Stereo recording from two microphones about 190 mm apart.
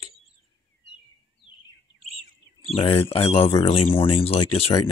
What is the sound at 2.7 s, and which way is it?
Speech, 30° left (ahead or behind).